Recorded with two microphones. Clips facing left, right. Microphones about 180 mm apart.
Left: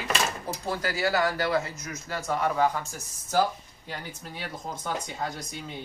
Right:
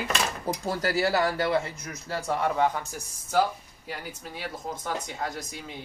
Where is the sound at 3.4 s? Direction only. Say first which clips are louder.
Right 1 dB; 5° right (ahead or behind).